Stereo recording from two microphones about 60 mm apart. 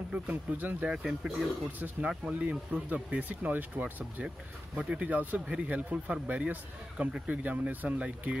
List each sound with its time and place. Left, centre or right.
0.1 s speech: right
0.8 s speech: centre
1.8 s speech: right